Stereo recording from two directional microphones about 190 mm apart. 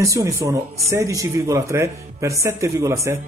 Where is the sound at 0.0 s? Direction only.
15° right (ahead or behind).